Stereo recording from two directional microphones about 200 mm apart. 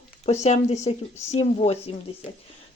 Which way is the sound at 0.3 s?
35° left (ahead or behind).